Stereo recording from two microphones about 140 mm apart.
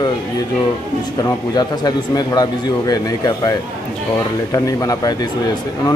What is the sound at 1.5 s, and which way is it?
Speech, 30° left (ahead or behind).